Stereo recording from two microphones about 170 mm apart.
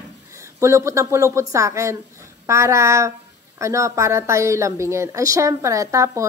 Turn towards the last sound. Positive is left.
turn(degrees=-20)  # may be behind; listen again after turning